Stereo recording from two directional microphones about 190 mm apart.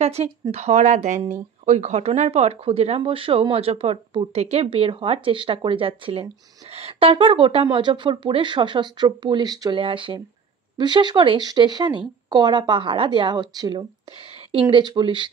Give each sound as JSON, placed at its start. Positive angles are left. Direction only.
{"t": 0.0, "sound": "speech", "side_deg": -35}